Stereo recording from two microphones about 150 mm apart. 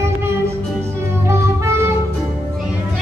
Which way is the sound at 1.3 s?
20° right (ahead or behind).